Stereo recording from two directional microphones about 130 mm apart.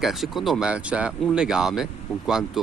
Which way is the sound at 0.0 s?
Centre (ahead or behind).